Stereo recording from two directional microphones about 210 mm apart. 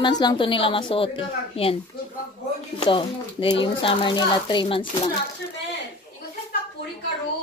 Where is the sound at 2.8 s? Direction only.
25° left (ahead or behind).